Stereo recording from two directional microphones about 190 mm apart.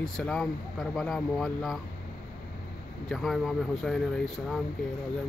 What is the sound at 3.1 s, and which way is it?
Speech, centre (ahead or behind).